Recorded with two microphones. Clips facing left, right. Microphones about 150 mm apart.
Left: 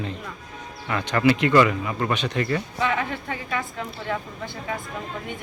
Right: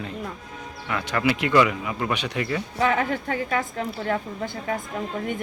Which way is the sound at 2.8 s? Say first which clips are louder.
Right 7 dB; 40° right (ahead or behind).